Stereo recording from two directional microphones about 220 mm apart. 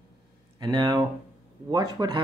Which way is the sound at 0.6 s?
20° right (ahead or behind).